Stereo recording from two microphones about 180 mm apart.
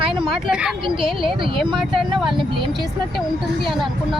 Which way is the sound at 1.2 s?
30° right (ahead or behind).